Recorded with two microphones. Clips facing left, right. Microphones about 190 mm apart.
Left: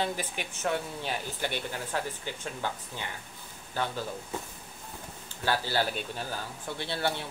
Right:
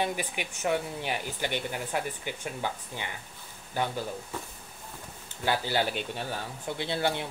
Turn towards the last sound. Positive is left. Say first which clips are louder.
# right 2 dB
turn(degrees=-20)  # may be behind; listen again after turning